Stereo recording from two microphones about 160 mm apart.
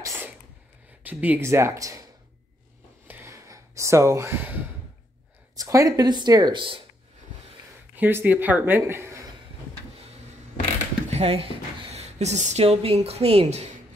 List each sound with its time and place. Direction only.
1.0 s speech: 10° right (ahead or behind)
3.1 s a sound: 15° right (ahead or behind)
5.6 s speech: 20° right (ahead or behind)
7.9 s speech: 10° right (ahead or behind)
11.1 s speech: 40° right (ahead or behind)